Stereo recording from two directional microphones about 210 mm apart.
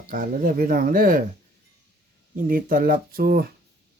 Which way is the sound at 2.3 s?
40° right (ahead or behind).